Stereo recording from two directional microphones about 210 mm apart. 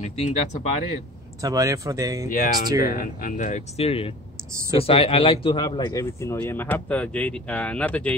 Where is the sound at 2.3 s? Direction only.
40° left (ahead or behind).